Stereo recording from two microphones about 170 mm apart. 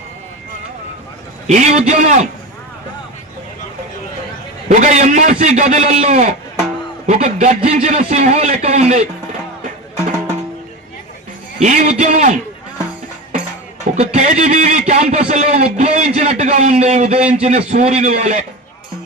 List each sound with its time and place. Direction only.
1.5 s a man's voice: 45° right (ahead or behind)
4.7 s a man's voice: 45° right (ahead or behind)
11.6 s a man's voice: 45° right (ahead or behind)
13.9 s a man's voice: 40° right (ahead or behind)